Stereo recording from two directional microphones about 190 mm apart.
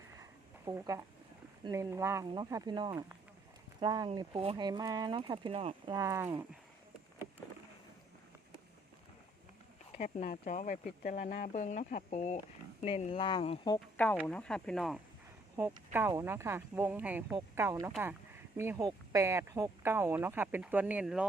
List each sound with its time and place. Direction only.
0.2 s a sound: 15° right (ahead or behind)
1.6 s speech: 15° right (ahead or behind)
10.0 s speech: 40° left (ahead or behind); by 13.7 s 25° left (ahead or behind)
13.7 s speech: 10° left (ahead or behind)
15.5 s speech: 15° right (ahead or behind)